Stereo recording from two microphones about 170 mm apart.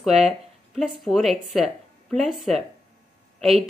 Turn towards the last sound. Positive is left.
turn(degrees=0)  # may be behind; listen again after turning